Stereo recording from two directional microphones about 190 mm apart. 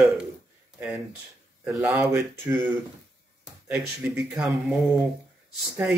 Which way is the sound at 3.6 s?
5° right (ahead or behind).